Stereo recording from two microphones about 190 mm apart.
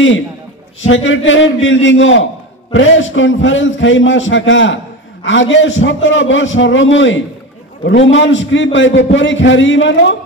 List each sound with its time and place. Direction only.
0.8 s a man's voice: 85° left